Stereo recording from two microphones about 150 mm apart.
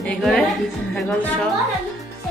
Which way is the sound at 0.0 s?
5° left (ahead or behind).